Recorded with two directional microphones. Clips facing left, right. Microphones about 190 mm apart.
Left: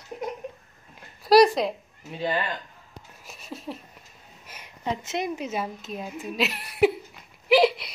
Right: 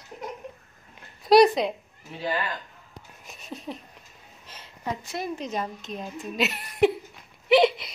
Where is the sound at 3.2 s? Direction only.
Centre (ahead or behind).